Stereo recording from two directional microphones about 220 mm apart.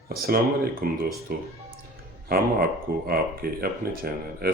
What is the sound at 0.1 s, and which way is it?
Speech, 45° right (ahead or behind).